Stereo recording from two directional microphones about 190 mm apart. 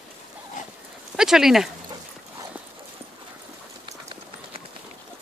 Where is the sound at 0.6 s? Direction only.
40° left (ahead or behind).